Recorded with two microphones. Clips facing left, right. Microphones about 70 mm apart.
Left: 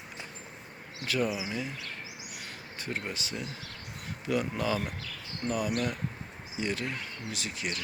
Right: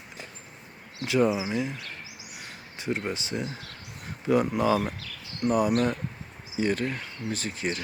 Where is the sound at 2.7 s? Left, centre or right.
Centre.